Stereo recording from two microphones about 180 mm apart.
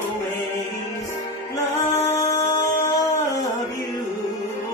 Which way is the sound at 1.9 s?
15° left (ahead or behind).